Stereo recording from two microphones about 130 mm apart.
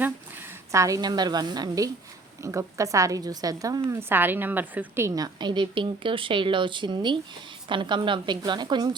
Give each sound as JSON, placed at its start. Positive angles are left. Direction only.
{"t": 0.7, "sound": "a woman's voice", "side_deg": -25}
{"t": 4.1, "sound": "a woman's voice", "side_deg": -15}